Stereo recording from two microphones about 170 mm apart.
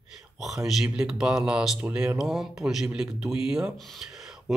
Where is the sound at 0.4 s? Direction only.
Centre (ahead or behind).